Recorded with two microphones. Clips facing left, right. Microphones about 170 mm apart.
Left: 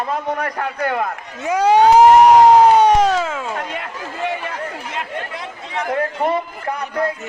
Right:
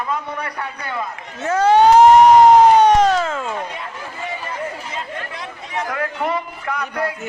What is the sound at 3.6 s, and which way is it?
Chatter, 70° left (ahead or behind).